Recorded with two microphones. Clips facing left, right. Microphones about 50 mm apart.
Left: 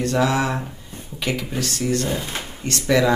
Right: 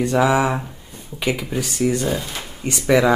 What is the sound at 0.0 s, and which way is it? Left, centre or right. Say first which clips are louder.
Speech: right 3 dB; centre.